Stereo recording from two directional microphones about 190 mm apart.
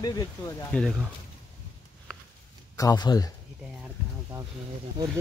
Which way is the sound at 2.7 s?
20° left (ahead or behind).